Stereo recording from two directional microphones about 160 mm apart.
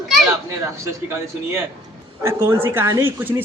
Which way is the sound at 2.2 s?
15° right (ahead or behind).